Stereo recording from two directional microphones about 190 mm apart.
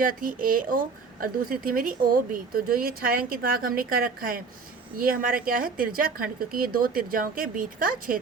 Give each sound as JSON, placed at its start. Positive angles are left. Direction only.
{"t": 0.0, "sound": "a woman's voice", "side_deg": -45}